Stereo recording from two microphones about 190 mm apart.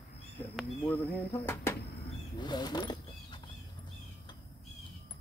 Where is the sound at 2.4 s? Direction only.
20° left (ahead or behind).